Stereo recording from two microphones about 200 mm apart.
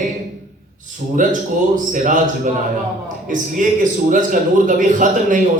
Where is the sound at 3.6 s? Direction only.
40° right (ahead or behind).